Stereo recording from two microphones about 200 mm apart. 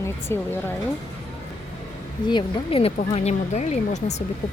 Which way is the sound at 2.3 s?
25° left (ahead or behind).